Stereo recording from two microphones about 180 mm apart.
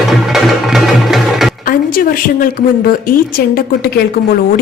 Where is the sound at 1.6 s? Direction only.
50° left (ahead or behind).